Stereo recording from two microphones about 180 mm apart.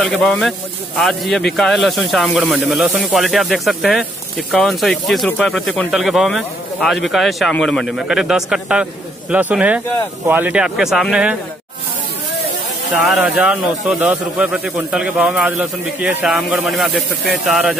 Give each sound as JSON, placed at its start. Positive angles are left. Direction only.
{"t": 0.0, "sound": "speech", "side_deg": 5}
{"t": 13.0, "sound": "speech", "side_deg": 0}